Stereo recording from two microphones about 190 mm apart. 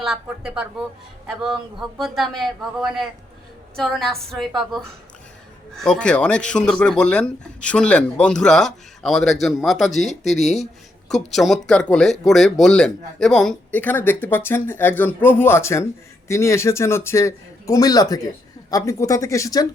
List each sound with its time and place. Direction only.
0.0 s speech: 5° right (ahead or behind)
2.0 s speech: centre (ahead or behind); by 19.6 s 15° left (ahead or behind)